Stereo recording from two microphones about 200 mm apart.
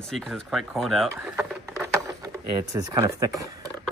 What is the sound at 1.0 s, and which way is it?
Speech, 10° right (ahead or behind).